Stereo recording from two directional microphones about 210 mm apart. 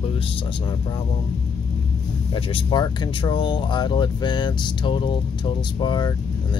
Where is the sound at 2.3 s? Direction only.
20° left (ahead or behind).